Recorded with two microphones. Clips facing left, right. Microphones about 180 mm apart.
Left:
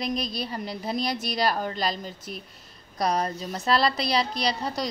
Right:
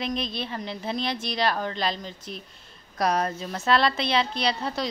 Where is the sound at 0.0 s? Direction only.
40° left (ahead or behind).